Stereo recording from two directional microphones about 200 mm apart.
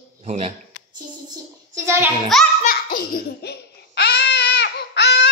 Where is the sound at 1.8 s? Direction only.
10° right (ahead or behind).